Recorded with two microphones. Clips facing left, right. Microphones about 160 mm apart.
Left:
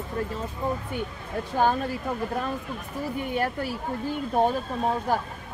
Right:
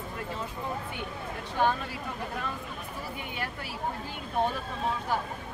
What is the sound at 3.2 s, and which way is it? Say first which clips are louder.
Speech: left 10 dB; 45° left (ahead or behind).